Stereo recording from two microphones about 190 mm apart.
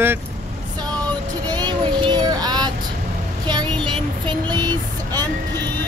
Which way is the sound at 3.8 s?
25° right (ahead or behind).